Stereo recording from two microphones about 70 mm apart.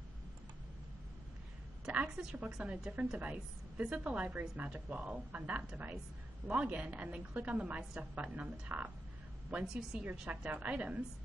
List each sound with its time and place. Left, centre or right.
1.9 s a woman's voice: centre